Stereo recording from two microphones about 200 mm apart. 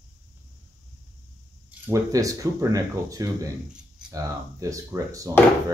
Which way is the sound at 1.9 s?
15° right (ahead or behind).